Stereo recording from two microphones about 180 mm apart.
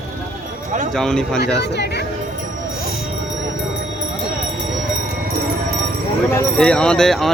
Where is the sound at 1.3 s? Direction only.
70° left (ahead or behind).